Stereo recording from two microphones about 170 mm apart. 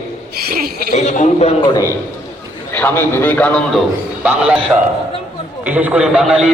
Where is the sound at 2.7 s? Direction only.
10° left (ahead or behind).